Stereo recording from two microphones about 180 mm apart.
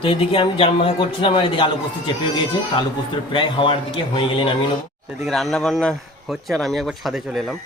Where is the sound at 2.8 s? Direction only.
25° left (ahead or behind).